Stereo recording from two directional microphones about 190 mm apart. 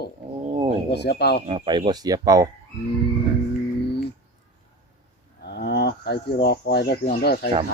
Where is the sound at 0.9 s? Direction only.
60° left (ahead or behind).